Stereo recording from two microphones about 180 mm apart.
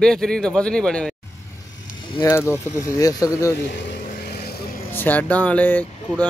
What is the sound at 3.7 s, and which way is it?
Vehicle, 65° left (ahead or behind).